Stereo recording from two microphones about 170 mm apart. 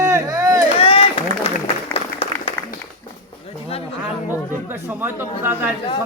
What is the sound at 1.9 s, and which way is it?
Applause, 35° left (ahead or behind).